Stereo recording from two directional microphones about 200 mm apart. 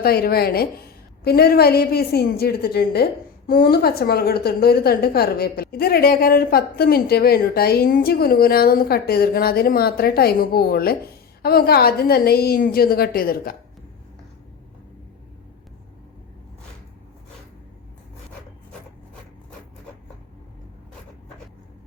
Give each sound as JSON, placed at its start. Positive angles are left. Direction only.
{"t": 0.0, "sound": "a woman's voice", "side_deg": 50}